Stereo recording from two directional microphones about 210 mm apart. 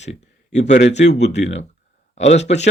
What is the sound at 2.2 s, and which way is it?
Speech, 30° left (ahead or behind).